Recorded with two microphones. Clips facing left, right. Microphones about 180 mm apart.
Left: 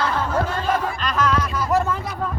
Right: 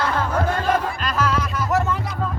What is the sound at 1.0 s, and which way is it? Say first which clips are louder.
Music: left 1 dB; 5° right (ahead or behind).